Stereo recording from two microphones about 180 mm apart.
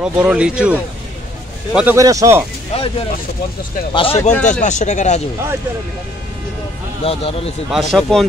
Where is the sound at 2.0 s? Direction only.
20° right (ahead or behind).